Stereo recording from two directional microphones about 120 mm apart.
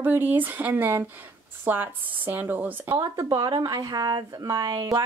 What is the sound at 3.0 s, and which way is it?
Speech, 35° right (ahead or behind).